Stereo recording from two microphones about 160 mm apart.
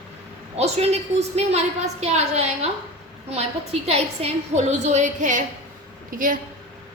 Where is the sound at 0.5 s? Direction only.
40° right (ahead or behind).